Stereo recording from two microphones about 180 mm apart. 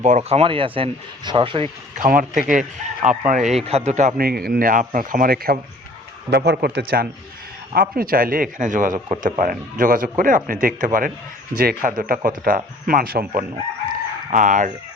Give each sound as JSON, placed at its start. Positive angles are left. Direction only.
{"t": 0.0, "sound": "speech", "side_deg": -40}
{"t": 2.0, "sound": "speech", "side_deg": -50}
{"t": 4.2, "sound": "speech", "side_deg": -55}
{"t": 13.8, "sound": "chicken", "side_deg": -45}